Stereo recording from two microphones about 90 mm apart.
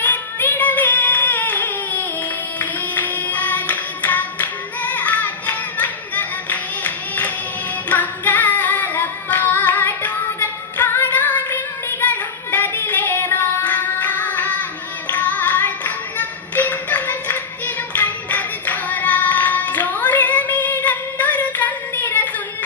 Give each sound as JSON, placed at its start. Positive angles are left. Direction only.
{"t": 0.0, "sound": "music", "side_deg": 20}